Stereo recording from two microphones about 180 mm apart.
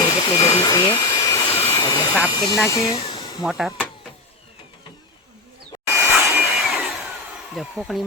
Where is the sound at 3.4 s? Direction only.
5° right (ahead or behind).